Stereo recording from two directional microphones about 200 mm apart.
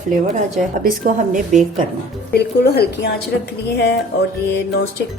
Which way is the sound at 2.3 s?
55° left (ahead or behind).